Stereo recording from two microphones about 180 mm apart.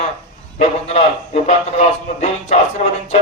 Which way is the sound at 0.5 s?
35° left (ahead or behind).